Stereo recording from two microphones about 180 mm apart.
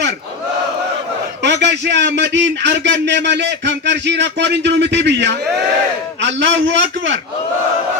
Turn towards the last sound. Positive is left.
turn(degrees=-85)